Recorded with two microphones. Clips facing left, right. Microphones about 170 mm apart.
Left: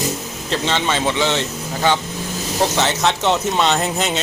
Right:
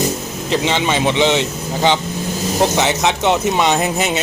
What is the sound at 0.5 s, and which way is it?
Speech, 15° right (ahead or behind).